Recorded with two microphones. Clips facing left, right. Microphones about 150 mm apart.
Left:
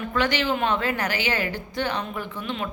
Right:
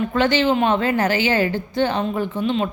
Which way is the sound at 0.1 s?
25° right (ahead or behind).